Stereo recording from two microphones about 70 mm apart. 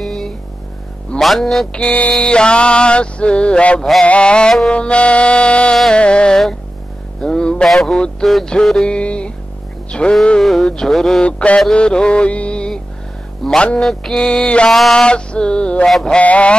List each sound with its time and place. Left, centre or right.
0.0 s a sound: centre
1.2 s music: centre
1.7 s music: centre
7.2 s speech: centre
8.8 s music: centre
10.4 s a sound: centre
10.7 s speech: centre
11.2 s mantra: centre
11.7 s music: centre
13.4 s a man's voice: centre
13.7 s music: centre
16.2 s speech: centre